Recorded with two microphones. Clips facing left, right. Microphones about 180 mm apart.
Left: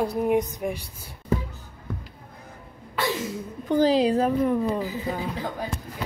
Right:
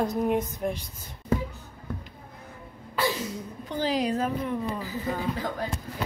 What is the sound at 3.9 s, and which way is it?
Speech, 30° left (ahead or behind).